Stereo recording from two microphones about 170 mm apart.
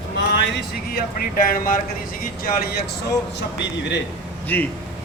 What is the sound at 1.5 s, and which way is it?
Speech, 55° left (ahead or behind).